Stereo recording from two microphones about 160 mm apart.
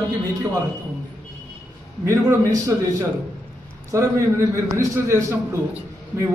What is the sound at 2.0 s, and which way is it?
Speech, 15° right (ahead or behind).